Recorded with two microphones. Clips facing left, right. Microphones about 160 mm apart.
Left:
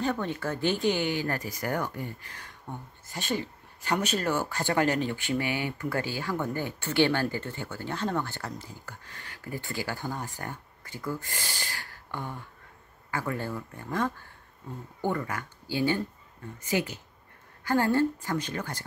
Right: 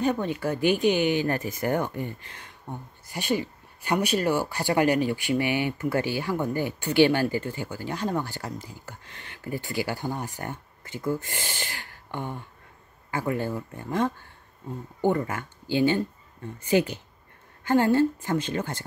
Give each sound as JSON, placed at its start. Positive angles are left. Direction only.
{"t": 0.0, "sound": "a woman's voice", "side_deg": -15}
{"t": 16.5, "sound": "speech", "side_deg": -30}
{"t": 17.6, "sound": "a woman's voice", "side_deg": -20}